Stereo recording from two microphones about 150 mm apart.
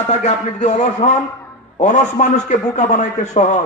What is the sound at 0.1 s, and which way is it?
A man's voice, 55° left (ahead or behind).